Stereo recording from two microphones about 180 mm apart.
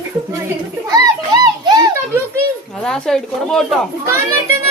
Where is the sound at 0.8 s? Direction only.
20° right (ahead or behind).